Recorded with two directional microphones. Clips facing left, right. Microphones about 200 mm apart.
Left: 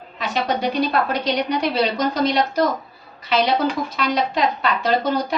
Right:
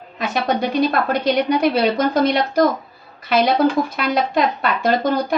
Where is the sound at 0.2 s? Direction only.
50° right (ahead or behind).